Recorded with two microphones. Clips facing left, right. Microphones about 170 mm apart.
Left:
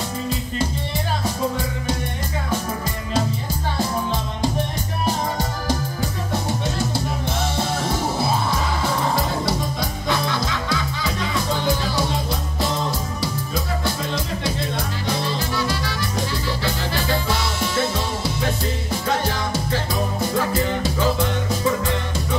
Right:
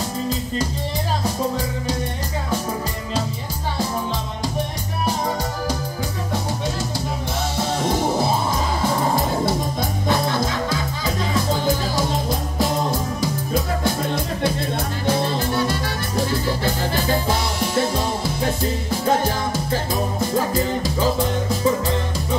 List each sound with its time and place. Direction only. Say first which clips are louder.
9.1 s music: right 2 dB; 50° right (ahead or behind)
14.0 s music: right 3 dB; 55° right (ahead or behind)
19.0 s music: right 4 dB; 45° right (ahead or behind)
21.0 s music: right 2 dB; 35° right (ahead or behind)